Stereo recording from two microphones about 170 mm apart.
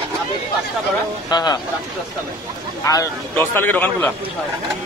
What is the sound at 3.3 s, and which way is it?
Speech, 10° left (ahead or behind).